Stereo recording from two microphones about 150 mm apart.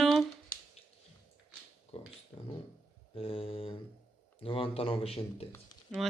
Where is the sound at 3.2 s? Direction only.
40° left (ahead or behind).